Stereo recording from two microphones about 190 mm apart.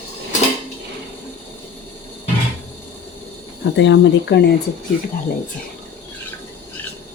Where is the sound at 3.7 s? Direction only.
70° left (ahead or behind).